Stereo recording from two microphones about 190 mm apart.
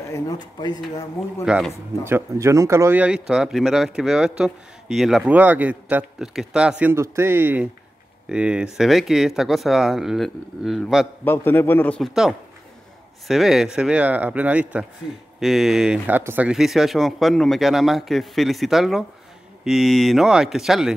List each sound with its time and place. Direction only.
0.1 s speech: 20° left (ahead or behind)
1.4 s speech: 5° right (ahead or behind)
1.7 s speech: 15° right (ahead or behind)
11.2 s a man's voice: 10° left (ahead or behind)